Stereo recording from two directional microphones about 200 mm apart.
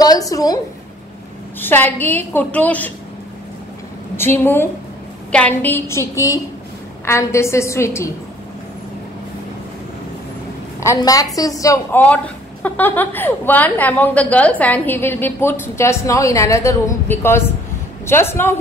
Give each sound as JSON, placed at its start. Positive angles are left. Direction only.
{"t": 0.0, "sound": "a woman's voice", "side_deg": 20}
{"t": 1.6, "sound": "a woman's voice", "side_deg": 10}
{"t": 4.2, "sound": "a woman's voice", "side_deg": 10}
{"t": 10.8, "sound": "a woman's voice", "side_deg": 15}